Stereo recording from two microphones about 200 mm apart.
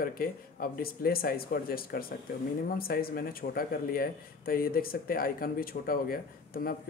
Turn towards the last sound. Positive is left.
turn(degrees=45)  # may be behind; listen again after turning